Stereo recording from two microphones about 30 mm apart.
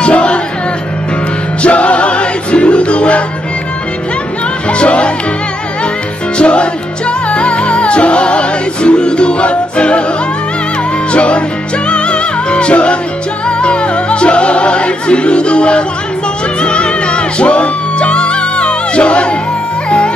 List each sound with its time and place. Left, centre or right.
0.0 s music: left
1.6 s music: left
4.6 s speech: left
6.3 s music: left
11.1 s music: left